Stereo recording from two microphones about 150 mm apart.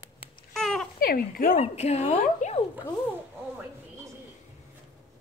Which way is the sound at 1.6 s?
45° left (ahead or behind).